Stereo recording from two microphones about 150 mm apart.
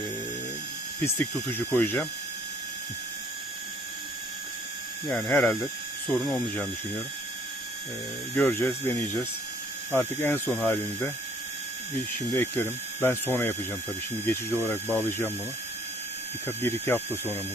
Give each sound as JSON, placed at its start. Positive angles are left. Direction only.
{"t": 1.0, "sound": "speech", "side_deg": 15}
{"t": 5.0, "sound": "speech", "side_deg": 10}
{"t": 8.4, "sound": "speech", "side_deg": 15}
{"t": 12.3, "sound": "speech", "side_deg": 15}
{"t": 16.5, "sound": "speech", "side_deg": 15}